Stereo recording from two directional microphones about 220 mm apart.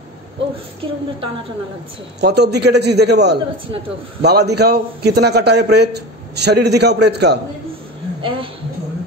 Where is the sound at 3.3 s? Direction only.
25° right (ahead or behind).